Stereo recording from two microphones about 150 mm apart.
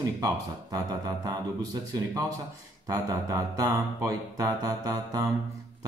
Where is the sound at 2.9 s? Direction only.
25° right (ahead or behind).